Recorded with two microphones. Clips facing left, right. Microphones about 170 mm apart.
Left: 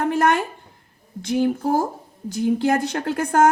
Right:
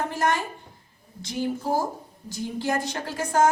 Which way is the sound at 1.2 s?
55° left (ahead or behind).